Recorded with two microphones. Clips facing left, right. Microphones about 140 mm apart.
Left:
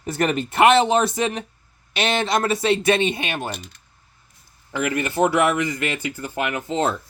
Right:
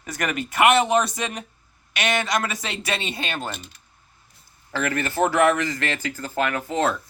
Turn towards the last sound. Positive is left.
turn(degrees=25)  # may be behind; listen again after turning